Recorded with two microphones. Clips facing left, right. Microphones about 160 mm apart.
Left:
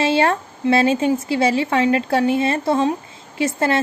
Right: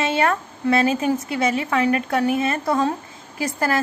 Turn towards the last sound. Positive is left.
turn(degrees=25)  # may be behind; listen again after turning